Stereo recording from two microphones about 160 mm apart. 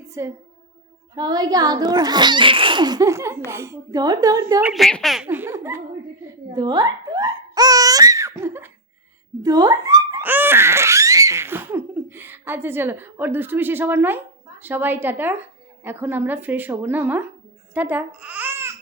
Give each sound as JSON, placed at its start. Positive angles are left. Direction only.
{"t": 0.0, "sound": "a sound", "side_deg": -20}
{"t": 1.1, "sound": "a child's voice", "side_deg": -25}
{"t": 4.7, "sound": "speech", "side_deg": 5}
{"t": 5.3, "sound": "speech", "side_deg": -15}
{"t": 17.7, "sound": "babbling", "side_deg": -10}